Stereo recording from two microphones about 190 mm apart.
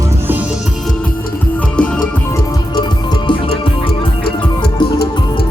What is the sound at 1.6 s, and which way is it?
Music, 5° left (ahead or behind).